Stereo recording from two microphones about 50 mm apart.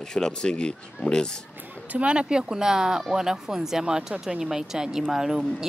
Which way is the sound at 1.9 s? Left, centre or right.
Right.